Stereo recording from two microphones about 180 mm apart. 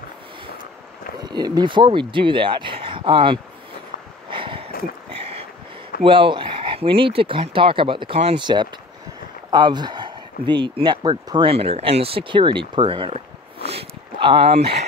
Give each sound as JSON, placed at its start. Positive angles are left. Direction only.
{"t": 1.2, "sound": "speech", "side_deg": -20}
{"t": 4.3, "sound": "a sound", "side_deg": -30}
{"t": 6.0, "sound": "speech", "side_deg": -30}
{"t": 13.7, "sound": "dog", "side_deg": -30}